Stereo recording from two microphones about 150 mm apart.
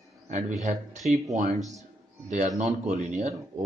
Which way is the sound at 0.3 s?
50° right (ahead or behind).